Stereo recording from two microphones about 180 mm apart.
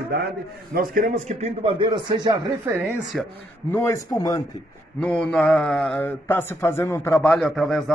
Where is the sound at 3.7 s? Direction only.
15° left (ahead or behind).